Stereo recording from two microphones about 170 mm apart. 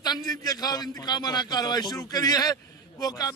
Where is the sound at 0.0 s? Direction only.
25° left (ahead or behind).